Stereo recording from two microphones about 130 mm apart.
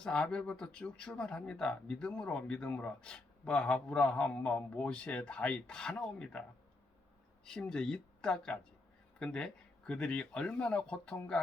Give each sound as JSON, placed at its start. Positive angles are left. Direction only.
{"t": 0.0, "sound": "speech", "side_deg": 5}
{"t": 7.4, "sound": "speech", "side_deg": 5}